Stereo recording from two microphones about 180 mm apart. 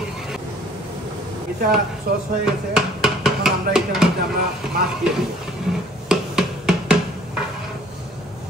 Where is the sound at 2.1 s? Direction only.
60° right (ahead or behind).